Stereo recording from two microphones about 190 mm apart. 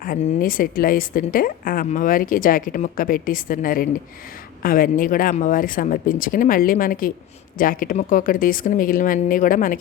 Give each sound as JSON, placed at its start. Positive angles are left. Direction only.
{"t": 0.0, "sound": "speech", "side_deg": 50}